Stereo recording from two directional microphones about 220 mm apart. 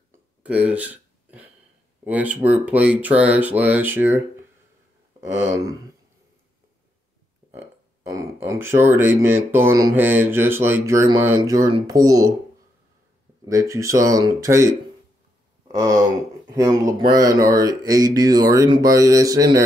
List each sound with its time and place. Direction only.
0.4 s a sound: 5° right (ahead or behind)
2.0 s speech: 5° right (ahead or behind)
5.5 s speech: 15° right (ahead or behind)
8.1 s speech: 15° right (ahead or behind)
13.5 s speech: 15° right (ahead or behind)